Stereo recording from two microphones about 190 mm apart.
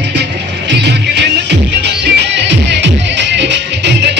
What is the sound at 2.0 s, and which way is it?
Music, 65° right (ahead or behind).